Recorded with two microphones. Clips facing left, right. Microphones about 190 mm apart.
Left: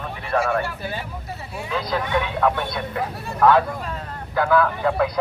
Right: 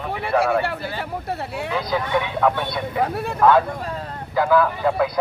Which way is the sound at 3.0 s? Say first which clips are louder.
Right 6 dB; 60° right (ahead or behind).